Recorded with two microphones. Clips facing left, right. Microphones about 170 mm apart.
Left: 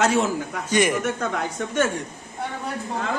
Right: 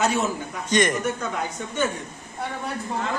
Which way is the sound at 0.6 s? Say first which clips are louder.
Even; 10° left (ahead or behind).